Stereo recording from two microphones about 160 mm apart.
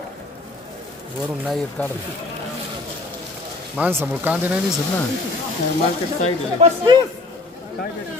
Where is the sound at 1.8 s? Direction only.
10° left (ahead or behind).